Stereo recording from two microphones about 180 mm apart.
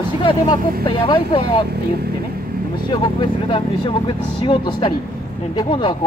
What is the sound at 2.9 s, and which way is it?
Speech, 25° left (ahead or behind).